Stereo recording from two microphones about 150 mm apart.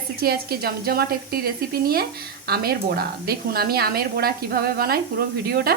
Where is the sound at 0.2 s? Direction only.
90° right.